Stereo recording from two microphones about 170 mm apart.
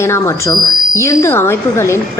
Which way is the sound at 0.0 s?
15° left (ahead or behind).